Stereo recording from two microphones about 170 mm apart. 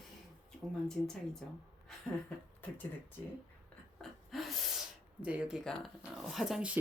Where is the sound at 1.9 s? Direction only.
Centre (ahead or behind).